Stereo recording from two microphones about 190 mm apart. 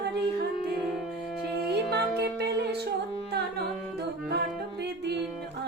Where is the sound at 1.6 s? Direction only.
60° right (ahead or behind).